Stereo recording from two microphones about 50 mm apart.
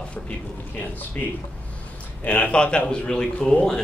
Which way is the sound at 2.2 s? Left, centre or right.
Left.